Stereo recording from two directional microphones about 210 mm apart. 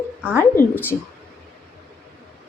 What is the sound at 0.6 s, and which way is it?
Speech, 45° left (ahead or behind).